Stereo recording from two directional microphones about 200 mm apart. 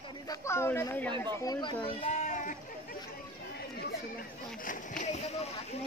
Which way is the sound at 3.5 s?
50° left (ahead or behind).